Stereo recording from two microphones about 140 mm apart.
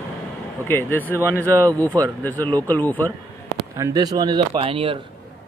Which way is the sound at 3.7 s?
25° right (ahead or behind).